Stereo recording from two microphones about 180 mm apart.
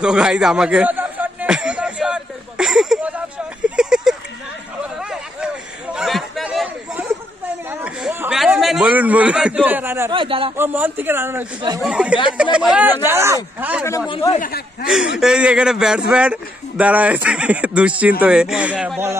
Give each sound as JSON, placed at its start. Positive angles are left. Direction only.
{"t": 0.0, "sound": "a sound", "side_deg": -5}
{"t": 5.9, "sound": "chatter", "side_deg": 0}
{"t": 7.8, "sound": "a sound", "side_deg": -10}
{"t": 8.4, "sound": "a man's voice", "side_deg": 0}
{"t": 10.1, "sound": "speech", "side_deg": -30}
{"t": 10.5, "sound": "speech", "side_deg": -10}
{"t": 14.0, "sound": "speech", "side_deg": 30}
{"t": 14.4, "sound": "speech", "side_deg": 60}
{"t": 15.1, "sound": "speech", "side_deg": -5}